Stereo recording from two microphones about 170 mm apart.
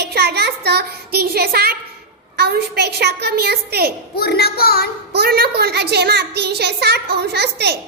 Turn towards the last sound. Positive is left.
turn(degrees=-75)  # may be behind; listen again after turning